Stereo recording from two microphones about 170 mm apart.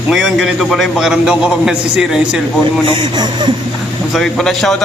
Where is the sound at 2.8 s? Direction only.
25° right (ahead or behind).